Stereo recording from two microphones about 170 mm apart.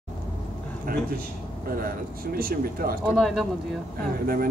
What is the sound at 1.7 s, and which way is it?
Speech, 60° right (ahead or behind).